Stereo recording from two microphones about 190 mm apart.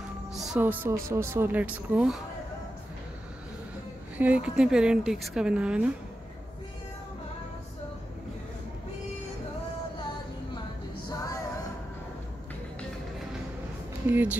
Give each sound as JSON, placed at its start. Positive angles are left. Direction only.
{"t": 0.3, "sound": "speech", "side_deg": 0}
{"t": 4.2, "sound": "a woman's voice", "side_deg": -5}
{"t": 11.1, "sound": "music", "side_deg": 20}
{"t": 14.0, "sound": "speech", "side_deg": -10}